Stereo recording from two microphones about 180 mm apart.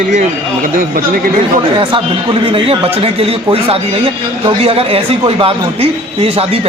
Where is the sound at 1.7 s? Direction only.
30° right (ahead or behind).